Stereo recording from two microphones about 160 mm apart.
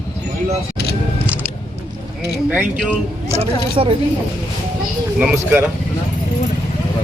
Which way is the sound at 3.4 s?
35° right (ahead or behind).